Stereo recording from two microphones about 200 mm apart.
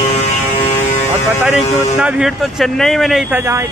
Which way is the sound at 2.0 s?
5° right (ahead or behind).